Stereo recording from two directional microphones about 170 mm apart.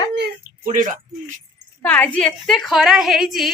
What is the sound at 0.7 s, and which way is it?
Speech, 50° right (ahead or behind).